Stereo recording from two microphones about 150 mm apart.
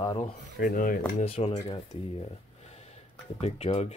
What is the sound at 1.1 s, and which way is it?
Speech, 40° left (ahead or behind).